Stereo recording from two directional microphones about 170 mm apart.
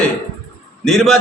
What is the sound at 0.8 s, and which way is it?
Speech, centre (ahead or behind).